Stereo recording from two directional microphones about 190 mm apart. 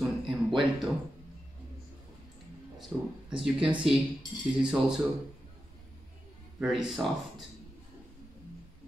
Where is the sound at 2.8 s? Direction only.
5° right (ahead or behind).